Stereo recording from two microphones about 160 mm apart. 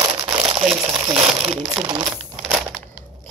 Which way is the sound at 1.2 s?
40° right (ahead or behind).